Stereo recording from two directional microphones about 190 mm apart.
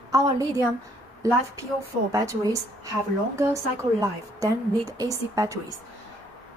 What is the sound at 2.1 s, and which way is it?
A woman's voice, 15° right (ahead or behind).